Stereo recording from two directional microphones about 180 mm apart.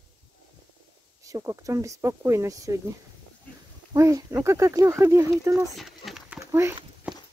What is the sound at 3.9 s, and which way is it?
Speech, 15° right (ahead or behind).